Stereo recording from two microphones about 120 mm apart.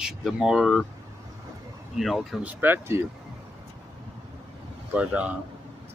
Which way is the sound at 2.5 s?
15° right (ahead or behind).